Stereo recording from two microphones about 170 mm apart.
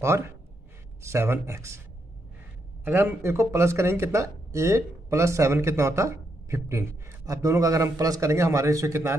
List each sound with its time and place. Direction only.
0.0 s speech: 15° right (ahead or behind)
2.8 s speech: 10° right (ahead or behind)